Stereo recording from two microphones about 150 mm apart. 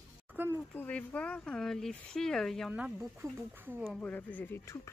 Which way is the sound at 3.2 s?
20° right (ahead or behind).